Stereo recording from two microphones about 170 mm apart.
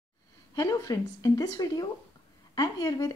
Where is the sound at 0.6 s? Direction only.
20° left (ahead or behind).